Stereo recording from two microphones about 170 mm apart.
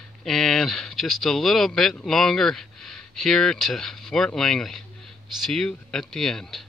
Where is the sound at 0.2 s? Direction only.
Centre (ahead or behind).